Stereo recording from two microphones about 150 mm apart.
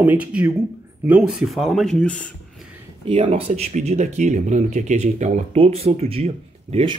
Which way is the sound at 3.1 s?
45° right (ahead or behind).